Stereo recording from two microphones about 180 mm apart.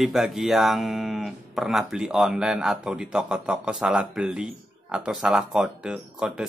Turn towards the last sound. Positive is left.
turn(degrees=-5)  # may be behind; listen again after turning